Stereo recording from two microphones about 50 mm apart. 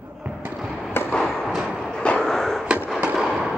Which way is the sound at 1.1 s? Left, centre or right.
Centre.